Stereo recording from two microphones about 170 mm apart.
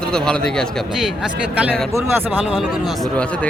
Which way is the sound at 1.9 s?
10° right (ahead or behind).